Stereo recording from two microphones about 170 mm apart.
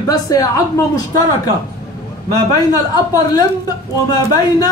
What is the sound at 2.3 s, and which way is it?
Speech, 20° left (ahead or behind).